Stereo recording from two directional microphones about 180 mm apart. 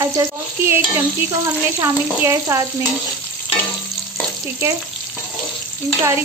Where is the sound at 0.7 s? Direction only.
10° right (ahead or behind).